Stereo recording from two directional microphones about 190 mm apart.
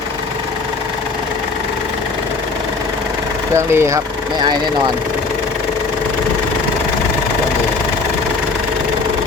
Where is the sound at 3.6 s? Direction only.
15° right (ahead or behind).